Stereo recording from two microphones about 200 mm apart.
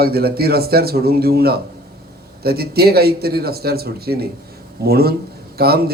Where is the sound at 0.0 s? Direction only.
50° right (ahead or behind).